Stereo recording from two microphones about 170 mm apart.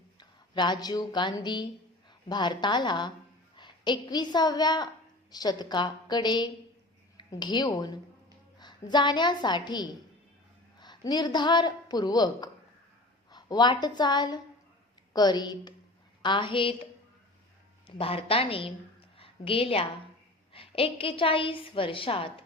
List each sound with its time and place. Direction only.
0.2 s a woman's voice: 25° left (ahead or behind)
17.8 s a woman's voice: 35° left (ahead or behind)